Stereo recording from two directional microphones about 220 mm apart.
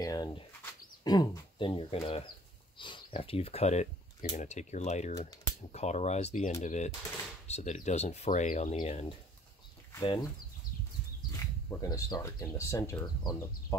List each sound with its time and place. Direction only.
0.0 s bird: 15° left (ahead or behind)
1.0 s speech: 15° left (ahead or behind)
9.9 s speech: 20° left (ahead or behind)
11.8 s speech: 15° left (ahead or behind)